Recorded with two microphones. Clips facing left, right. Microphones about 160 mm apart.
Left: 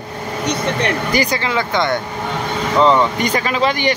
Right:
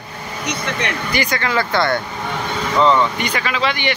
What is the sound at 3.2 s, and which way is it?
Speech, 40° left (ahead or behind).